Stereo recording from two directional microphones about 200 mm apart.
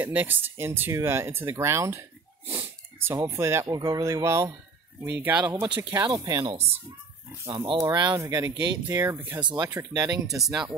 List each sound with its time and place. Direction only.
0.0 s speech: 10° right (ahead or behind)
3.1 s speech: 15° right (ahead or behind)
5.5 s speech: 20° right (ahead or behind)
10.4 s speech: 5° right (ahead or behind)